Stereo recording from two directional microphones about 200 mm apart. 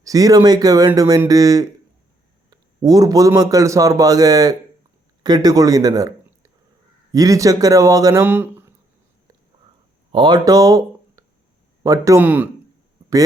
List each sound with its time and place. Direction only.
0.0 s a man's voice: 20° right (ahead or behind)
10.1 s a man's voice: 20° right (ahead or behind)